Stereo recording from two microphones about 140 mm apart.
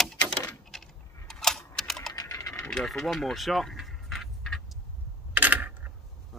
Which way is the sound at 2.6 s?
Centre (ahead or behind).